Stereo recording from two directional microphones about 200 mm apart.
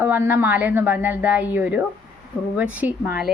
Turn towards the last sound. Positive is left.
turn(degrees=-10)  # may be behind; listen again after turning